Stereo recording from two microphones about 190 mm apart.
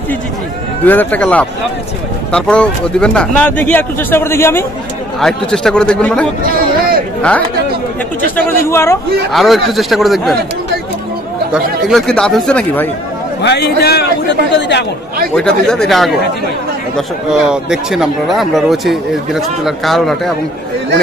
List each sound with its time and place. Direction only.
0.8 s speech: 10° left (ahead or behind)
8.4 s speech: 10° left (ahead or behind)
9.3 s speech: centre (ahead or behind)
11.5 s speech: centre (ahead or behind)
13.4 s a man's voice: 60° left (ahead or behind)
15.3 s speech: 5° left (ahead or behind)